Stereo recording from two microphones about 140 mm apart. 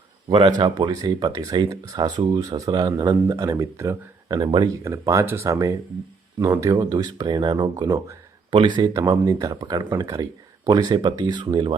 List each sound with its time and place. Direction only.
0.3 s speech: 35° right (ahead or behind)